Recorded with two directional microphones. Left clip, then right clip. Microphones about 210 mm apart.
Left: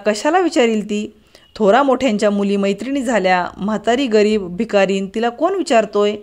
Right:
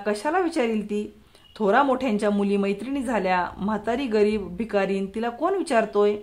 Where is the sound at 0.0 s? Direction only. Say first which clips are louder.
Left 8 dB; 25° left (ahead or behind).